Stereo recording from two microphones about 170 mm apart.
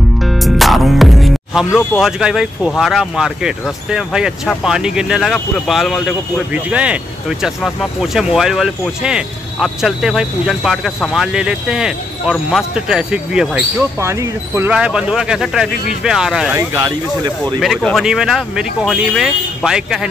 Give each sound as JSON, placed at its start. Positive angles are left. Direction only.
{"t": 0.4, "sound": "music", "side_deg": 0}
{"t": 1.8, "sound": "speech", "side_deg": -5}
{"t": 16.5, "sound": "speech", "side_deg": -25}
{"t": 17.6, "sound": "speech", "side_deg": 0}